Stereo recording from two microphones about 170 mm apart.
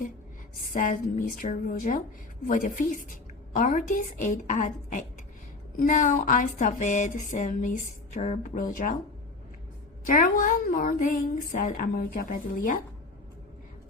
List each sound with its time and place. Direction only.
0.7 s speech: 50° left (ahead or behind)
10.1 s speech: 50° left (ahead or behind)